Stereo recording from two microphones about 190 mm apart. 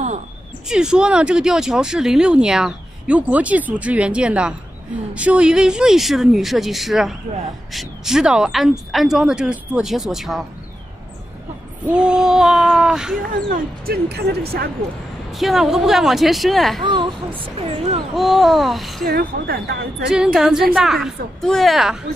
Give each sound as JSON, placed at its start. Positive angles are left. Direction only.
{"t": 0.7, "sound": "speech", "side_deg": -5}
{"t": 11.8, "sound": "speech", "side_deg": -5}
{"t": 13.5, "sound": "speech", "side_deg": -55}
{"t": 15.3, "sound": "speech", "side_deg": 0}
{"t": 16.8, "sound": "a child's voice", "side_deg": -25}
{"t": 18.1, "sound": "speech", "side_deg": 0}
{"t": 19.0, "sound": "speech", "side_deg": -50}
{"t": 20.3, "sound": "speech", "side_deg": 0}